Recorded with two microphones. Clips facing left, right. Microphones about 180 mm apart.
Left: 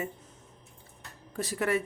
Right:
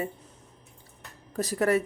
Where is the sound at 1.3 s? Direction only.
40° right (ahead or behind).